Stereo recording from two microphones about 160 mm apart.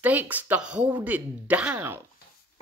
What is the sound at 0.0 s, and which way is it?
A man's voice, 10° right (ahead or behind).